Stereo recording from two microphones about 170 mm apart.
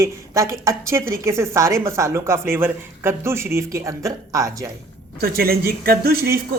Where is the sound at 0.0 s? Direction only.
20° right (ahead or behind).